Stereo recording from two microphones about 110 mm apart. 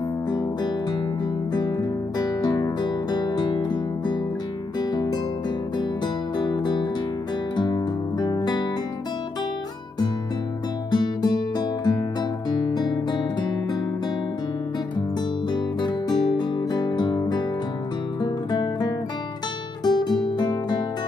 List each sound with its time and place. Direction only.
1.5 s music: 40° left (ahead or behind)
6.3 s music: 40° left (ahead or behind)
10.9 s music: 40° left (ahead or behind)
15.5 s music: 40° left (ahead or behind)